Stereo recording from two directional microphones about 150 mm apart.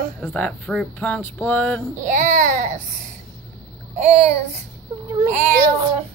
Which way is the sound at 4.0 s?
45° right (ahead or behind).